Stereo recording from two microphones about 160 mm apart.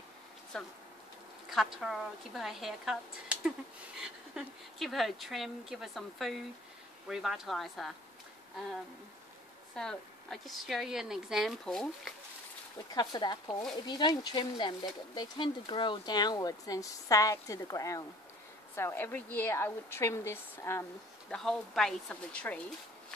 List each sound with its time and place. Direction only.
0.5 s a woman's voice: 5° left (ahead or behind)
1.8 s a woman's voice: centre (ahead or behind)
9.8 s a woman's voice: 5° left (ahead or behind)
12.9 s a woman's voice: 25° left (ahead or behind)
21.3 s a woman's voice: centre (ahead or behind)